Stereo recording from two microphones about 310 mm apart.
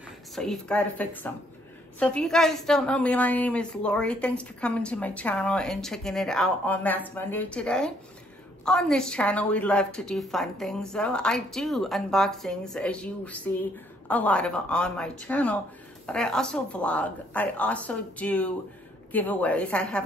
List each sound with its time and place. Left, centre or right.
0.4 s a woman's voice: centre